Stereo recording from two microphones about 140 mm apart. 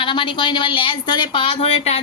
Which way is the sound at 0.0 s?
35° left (ahead or behind).